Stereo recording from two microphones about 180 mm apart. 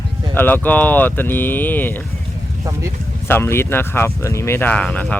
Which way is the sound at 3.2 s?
15° left (ahead or behind).